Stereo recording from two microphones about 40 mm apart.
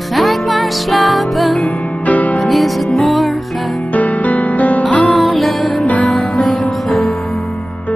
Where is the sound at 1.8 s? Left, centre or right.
Left.